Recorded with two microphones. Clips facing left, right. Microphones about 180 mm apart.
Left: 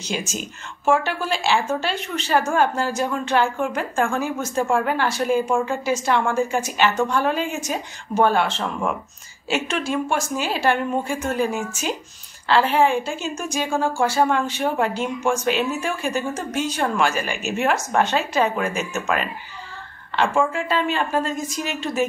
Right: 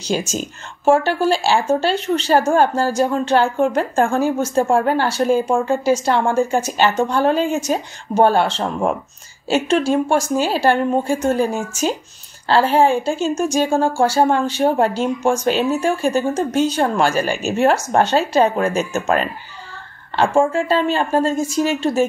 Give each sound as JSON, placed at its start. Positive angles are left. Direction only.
{"t": 0.0, "sound": "speech", "side_deg": -35}
{"t": 20.5, "sound": "speech", "side_deg": -30}